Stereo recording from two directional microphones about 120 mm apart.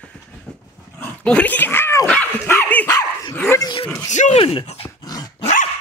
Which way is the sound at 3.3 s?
15° left (ahead or behind).